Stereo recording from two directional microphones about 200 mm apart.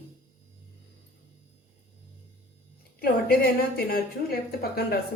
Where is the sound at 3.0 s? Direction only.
50° left (ahead or behind).